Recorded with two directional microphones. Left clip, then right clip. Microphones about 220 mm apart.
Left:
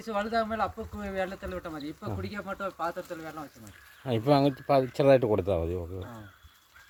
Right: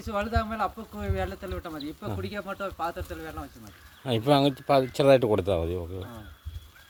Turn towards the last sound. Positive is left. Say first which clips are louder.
# right 2 dB
turn(degrees=-5)  # may be behind; listen again after turning